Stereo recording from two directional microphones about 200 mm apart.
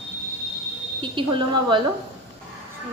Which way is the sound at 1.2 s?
25° right (ahead or behind).